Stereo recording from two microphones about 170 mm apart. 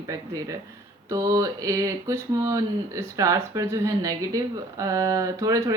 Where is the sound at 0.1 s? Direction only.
20° right (ahead or behind).